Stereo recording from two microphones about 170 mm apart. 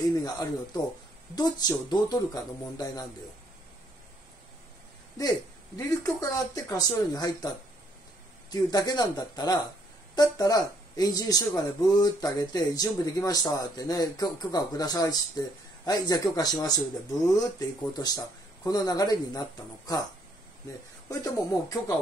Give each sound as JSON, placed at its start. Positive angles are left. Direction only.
{"t": 0.1, "sound": "speech", "side_deg": 20}
{"t": 5.8, "sound": "speech", "side_deg": 20}
{"t": 21.1, "sound": "speech", "side_deg": 20}